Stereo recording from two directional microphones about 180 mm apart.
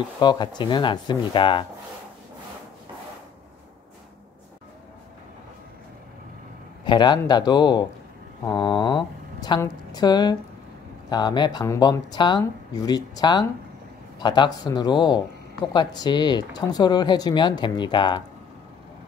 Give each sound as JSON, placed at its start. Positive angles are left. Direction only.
{"t": 0.2, "sound": "speech", "side_deg": 25}
{"t": 6.8, "sound": "speech", "side_deg": 25}